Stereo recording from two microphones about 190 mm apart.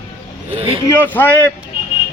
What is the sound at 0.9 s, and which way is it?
Speech, 10° left (ahead or behind).